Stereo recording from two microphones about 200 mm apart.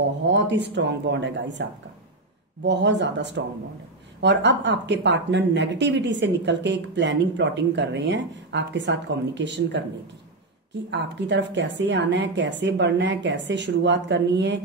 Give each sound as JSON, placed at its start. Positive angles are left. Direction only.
{"t": 0.3, "sound": "speech", "side_deg": -60}
{"t": 10.9, "sound": "speech", "side_deg": -60}